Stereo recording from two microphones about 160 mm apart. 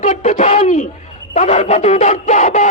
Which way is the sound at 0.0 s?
50° left (ahead or behind).